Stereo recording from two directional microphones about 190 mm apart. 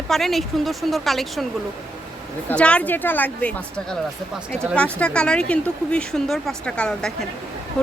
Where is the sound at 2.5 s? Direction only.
5° left (ahead or behind).